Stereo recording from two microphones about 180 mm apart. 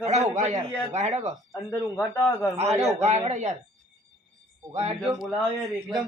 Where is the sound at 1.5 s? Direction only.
10° left (ahead or behind).